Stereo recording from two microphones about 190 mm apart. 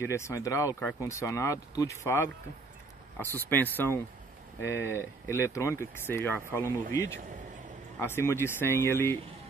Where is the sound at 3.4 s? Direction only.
10° left (ahead or behind).